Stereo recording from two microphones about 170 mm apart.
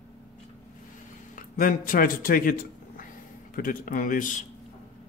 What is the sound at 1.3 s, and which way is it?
A man's voice, 55° left (ahead or behind).